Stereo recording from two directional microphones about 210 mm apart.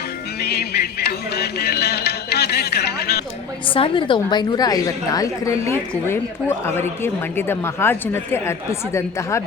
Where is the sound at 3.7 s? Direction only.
25° left (ahead or behind).